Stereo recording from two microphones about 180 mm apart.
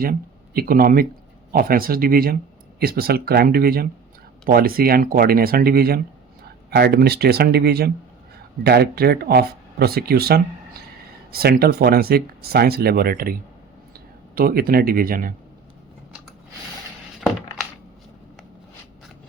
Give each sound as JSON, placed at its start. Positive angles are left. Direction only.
{"t": 0.0, "sound": "speech", "side_deg": -55}
{"t": 14.3, "sound": "speech", "side_deg": -55}